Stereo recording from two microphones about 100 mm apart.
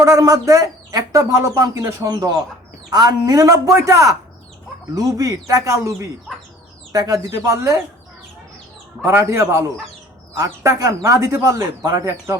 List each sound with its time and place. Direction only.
0.0 s speech: 35° right (ahead or behind)
9.0 s a man's voice: 30° right (ahead or behind)
12.0 s a man's voice: 25° right (ahead or behind)